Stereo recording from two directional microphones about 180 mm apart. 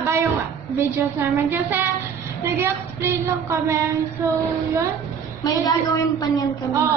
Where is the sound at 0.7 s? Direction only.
15° right (ahead or behind).